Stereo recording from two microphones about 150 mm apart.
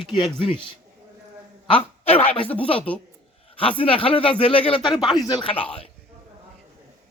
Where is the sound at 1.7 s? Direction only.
40° left (ahead or behind).